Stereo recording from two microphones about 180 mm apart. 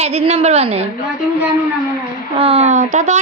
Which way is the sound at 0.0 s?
35° right (ahead or behind).